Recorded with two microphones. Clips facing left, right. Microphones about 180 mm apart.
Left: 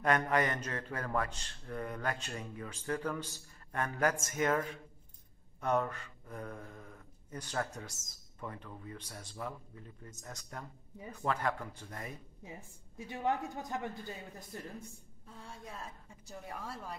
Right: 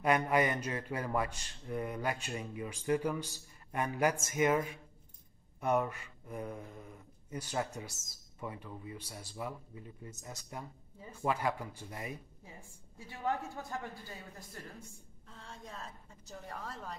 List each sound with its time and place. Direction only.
0.0 s speech: 10° right (ahead or behind)
12.4 s a woman's voice: 20° left (ahead or behind)
15.2 s a woman's voice: 10° left (ahead or behind)